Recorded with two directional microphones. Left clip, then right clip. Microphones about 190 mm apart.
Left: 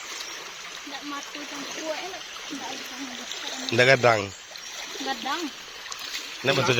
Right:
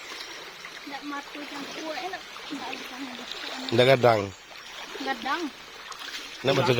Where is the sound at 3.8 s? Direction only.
15° right (ahead or behind).